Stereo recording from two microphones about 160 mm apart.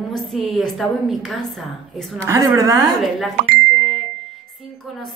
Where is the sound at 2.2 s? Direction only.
20° right (ahead or behind).